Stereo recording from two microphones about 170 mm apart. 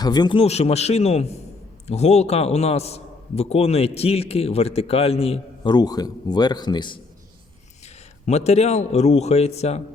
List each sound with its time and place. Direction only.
0.0 s a man's voice: 25° left (ahead or behind)
8.3 s a man's voice: 40° left (ahead or behind)